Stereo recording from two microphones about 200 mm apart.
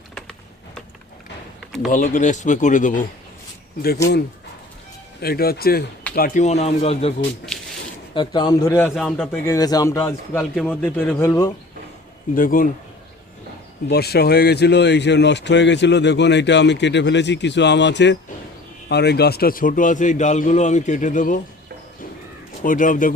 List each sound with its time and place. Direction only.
0.1 s typing: centre (ahead or behind)
1.9 s a man's voice: 40° left (ahead or behind)
5.2 s a man's voice: 50° left (ahead or behind); by 7.1 s 30° left (ahead or behind)
8.1 s a man's voice: 20° left (ahead or behind)
9.0 s speech: centre (ahead or behind)
9.5 s a man's voice: 20° left (ahead or behind)
10.5 s a man's voice: 5° left (ahead or behind)
12.3 s speech: 45° left (ahead or behind)
13.9 s a man's voice: 50° left (ahead or behind)
22.6 s a man's voice: 40° left (ahead or behind)